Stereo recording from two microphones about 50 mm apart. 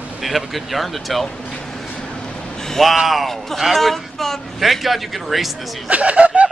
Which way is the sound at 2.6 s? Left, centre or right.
Centre.